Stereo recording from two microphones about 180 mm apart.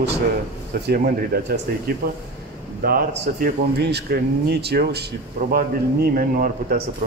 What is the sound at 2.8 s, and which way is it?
Speech, 55° right (ahead or behind).